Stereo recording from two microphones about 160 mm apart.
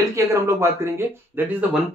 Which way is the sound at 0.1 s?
20° right (ahead or behind).